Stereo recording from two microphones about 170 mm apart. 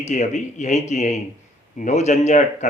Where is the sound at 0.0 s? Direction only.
45° left (ahead or behind).